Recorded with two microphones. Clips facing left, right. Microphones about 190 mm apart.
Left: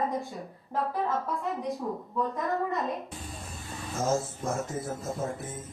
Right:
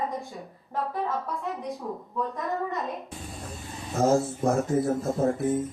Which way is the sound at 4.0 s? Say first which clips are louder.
Right 6 dB; 60° right (ahead or behind).